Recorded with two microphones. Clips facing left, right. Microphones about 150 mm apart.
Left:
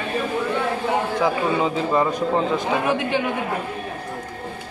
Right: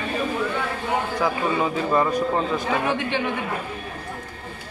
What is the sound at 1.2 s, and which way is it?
Speech, 15° left (ahead or behind).